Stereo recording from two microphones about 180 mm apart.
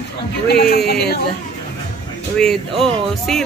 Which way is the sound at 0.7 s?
60° left (ahead or behind).